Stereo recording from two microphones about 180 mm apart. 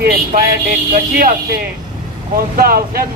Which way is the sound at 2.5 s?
55° right (ahead or behind).